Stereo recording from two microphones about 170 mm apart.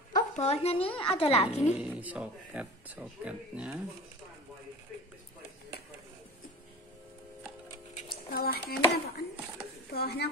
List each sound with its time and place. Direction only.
0.1 s a woman's voice: 40° left (ahead or behind)
1.8 s speech: 10° right (ahead or behind)
8.3 s speech: 60° left (ahead or behind)